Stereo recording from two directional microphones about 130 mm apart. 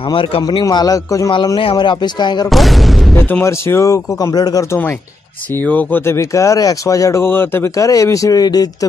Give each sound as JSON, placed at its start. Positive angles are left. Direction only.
{"t": 0.1, "sound": "a man's voice", "side_deg": 40}
{"t": 1.3, "sound": "a man's voice", "side_deg": 40}
{"t": 2.5, "sound": "boom", "side_deg": 0}
{"t": 3.2, "sound": "speech", "side_deg": 15}
{"t": 5.6, "sound": "speech", "side_deg": 10}